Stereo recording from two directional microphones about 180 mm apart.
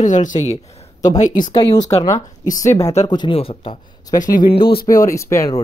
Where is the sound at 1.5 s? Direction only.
20° left (ahead or behind).